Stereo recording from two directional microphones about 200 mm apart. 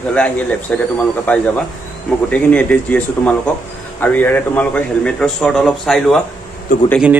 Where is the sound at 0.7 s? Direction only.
5° left (ahead or behind).